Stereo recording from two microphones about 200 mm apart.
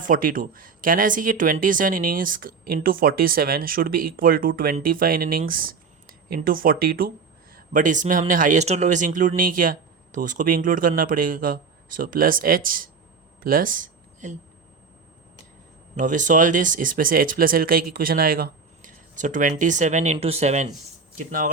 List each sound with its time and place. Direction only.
0.1 s speech: 45° right (ahead or behind)
16.0 s speech: 40° right (ahead or behind)